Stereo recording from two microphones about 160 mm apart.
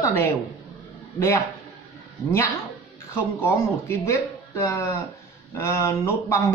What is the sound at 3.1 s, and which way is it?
A man's voice, 15° left (ahead or behind).